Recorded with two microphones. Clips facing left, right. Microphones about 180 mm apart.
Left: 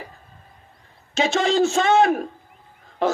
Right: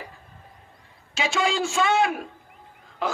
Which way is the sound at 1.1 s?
40° left (ahead or behind).